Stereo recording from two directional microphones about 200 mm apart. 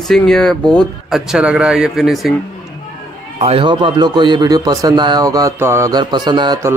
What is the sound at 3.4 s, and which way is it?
A man's voice, 30° right (ahead or behind).